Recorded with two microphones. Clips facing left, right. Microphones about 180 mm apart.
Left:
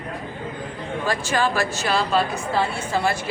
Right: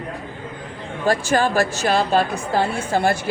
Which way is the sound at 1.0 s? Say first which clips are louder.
Right 5 dB; 45° right (ahead or behind).